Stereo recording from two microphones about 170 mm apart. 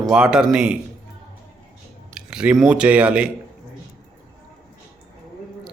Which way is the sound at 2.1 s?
5° right (ahead or behind).